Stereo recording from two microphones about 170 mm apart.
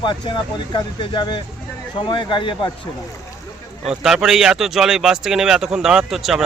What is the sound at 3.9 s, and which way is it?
Speech, 5° right (ahead or behind).